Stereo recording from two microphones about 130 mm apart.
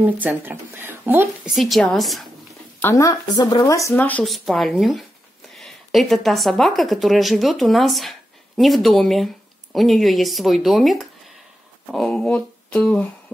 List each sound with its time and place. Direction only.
0.0 s speech: 15° right (ahead or behind)
1.5 s speech: centre (ahead or behind)
2.8 s speech: 25° left (ahead or behind)
3.9 s speech: 10° left (ahead or behind)
4.3 s speech: centre (ahead or behind)